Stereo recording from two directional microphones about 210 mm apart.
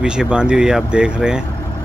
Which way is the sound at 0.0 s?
5° right (ahead or behind).